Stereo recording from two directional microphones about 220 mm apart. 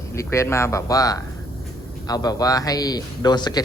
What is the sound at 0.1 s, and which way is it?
A man's voice, 10° left (ahead or behind).